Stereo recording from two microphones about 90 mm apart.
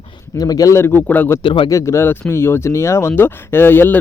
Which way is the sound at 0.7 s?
25° left (ahead or behind).